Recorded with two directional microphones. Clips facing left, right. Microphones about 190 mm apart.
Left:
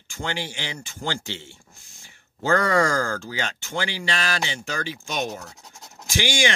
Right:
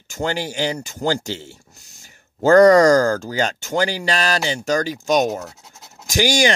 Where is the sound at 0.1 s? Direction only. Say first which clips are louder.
Right 7 dB; 40° right (ahead or behind).